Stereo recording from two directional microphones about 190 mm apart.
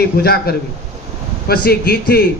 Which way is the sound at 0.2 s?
55° left (ahead or behind).